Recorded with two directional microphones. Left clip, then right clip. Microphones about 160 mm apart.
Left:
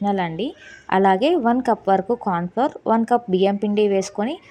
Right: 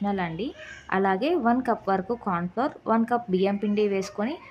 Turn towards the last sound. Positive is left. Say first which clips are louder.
# left 6 dB
turn(degrees=30)  # may be behind; listen again after turning